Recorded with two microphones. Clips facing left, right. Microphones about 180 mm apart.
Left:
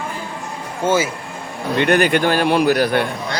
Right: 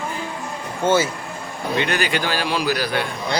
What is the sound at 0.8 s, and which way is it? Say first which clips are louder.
Speech: left 1 dB; 10° left (ahead or behind).